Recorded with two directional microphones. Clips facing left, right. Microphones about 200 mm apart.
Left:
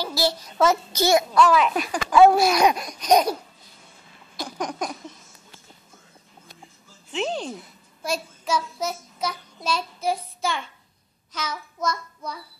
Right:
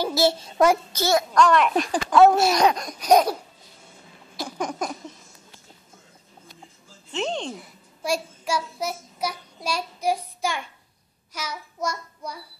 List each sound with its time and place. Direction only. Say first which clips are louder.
0.0 s a child's voice: right 4 dB; 25° right (ahead or behind)
0.9 s a child's voice: left 1 dB; 10° left (ahead or behind)
2.9 s a child's voice: right 1 dB; 5° right (ahead or behind)
4.4 s a sound: right 1 dB; 5° right (ahead or behind)
7.1 s a child's voice: even; 5° left (ahead or behind)
7.5 s a child's voice: left 1 dB; 10° right (ahead or behind)
11.3 s child singing: left 2 dB; 15° right (ahead or behind)